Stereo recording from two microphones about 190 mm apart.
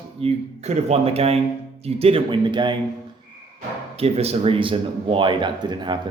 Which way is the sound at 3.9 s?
30° right (ahead or behind).